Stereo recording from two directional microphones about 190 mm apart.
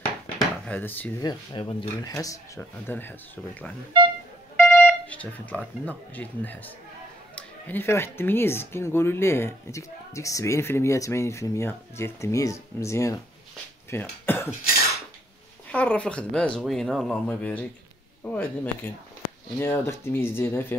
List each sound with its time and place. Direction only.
0.4 s a sound: 10° left (ahead or behind)
1.2 s speech: 25° left (ahead or behind)
4.6 s speech: centre (ahead or behind)
15.7 s speech: 5° left (ahead or behind)